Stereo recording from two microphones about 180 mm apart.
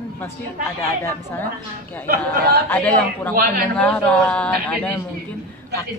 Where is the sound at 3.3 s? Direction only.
55° right (ahead or behind).